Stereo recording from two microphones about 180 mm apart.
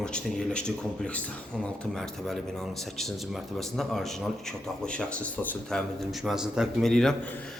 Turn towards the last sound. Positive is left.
turn(degrees=0)  # may be behind; listen again after turning